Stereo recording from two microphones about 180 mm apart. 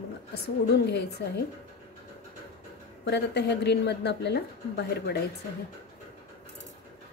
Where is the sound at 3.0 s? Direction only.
70° left (ahead or behind).